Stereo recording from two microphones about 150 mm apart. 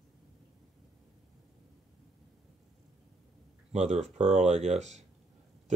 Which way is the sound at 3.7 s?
50° right (ahead or behind).